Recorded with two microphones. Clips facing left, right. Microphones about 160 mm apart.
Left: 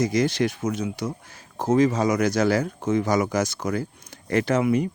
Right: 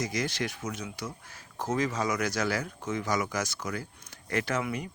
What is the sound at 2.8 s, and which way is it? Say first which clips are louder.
Speech: left 10 dB; 40° left (ahead or behind).